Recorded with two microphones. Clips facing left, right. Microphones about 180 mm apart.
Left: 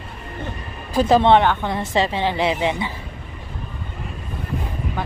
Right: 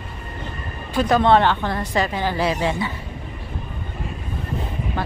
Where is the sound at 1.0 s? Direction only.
25° left (ahead or behind).